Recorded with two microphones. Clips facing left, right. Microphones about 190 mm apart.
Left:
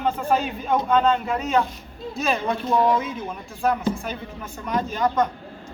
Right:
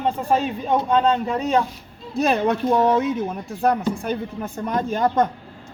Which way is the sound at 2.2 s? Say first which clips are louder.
Right 5 dB; 60° right (ahead or behind).